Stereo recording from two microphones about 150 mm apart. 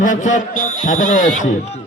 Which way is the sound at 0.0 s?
55° left (ahead or behind).